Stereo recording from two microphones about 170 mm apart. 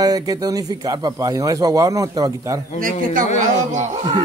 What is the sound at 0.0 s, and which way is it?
Speech, 20° right (ahead or behind).